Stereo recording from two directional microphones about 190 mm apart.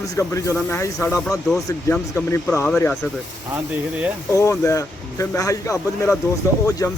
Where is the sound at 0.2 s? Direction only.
15° left (ahead or behind).